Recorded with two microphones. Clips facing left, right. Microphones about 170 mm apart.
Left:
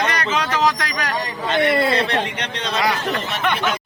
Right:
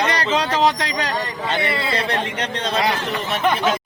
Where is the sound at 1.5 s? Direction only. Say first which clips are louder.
Left 6 dB; 55° left (ahead or behind).